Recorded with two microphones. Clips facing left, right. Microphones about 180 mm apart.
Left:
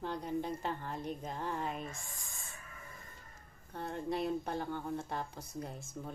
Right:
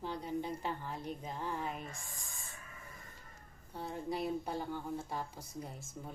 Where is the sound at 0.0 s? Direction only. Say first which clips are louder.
Left 1 dB; 55° left (ahead or behind).